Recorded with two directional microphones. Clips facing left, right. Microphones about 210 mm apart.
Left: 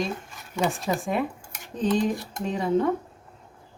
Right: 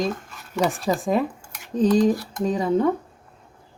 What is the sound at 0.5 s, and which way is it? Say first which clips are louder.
Speech: right 3 dB; 35° right (ahead or behind).